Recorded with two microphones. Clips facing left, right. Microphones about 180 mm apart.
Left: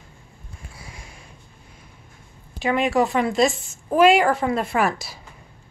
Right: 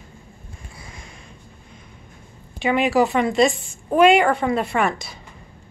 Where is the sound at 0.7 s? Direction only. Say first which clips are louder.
Right 1 dB; 5° left (ahead or behind).